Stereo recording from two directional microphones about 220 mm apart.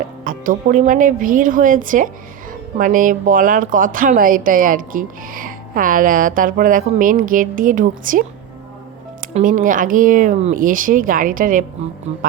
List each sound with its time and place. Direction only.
0.3 s speech: 35° right (ahead or behind)
9.3 s speech: 35° right (ahead or behind)